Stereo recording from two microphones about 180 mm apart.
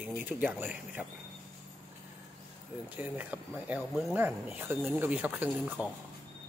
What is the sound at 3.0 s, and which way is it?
Speech, 10° right (ahead or behind).